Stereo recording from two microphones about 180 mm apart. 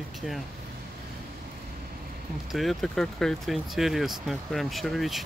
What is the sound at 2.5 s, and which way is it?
Speech, centre (ahead or behind).